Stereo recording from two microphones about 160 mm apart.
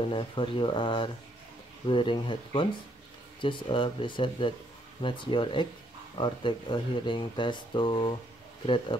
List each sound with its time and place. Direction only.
0.1 s speech: 35° left (ahead or behind)